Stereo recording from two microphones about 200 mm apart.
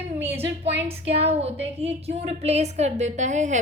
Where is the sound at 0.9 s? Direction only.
30° right (ahead or behind).